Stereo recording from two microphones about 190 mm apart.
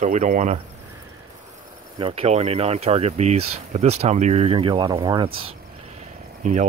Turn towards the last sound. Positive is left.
turn(degrees=-40)  # may be behind; listen again after turning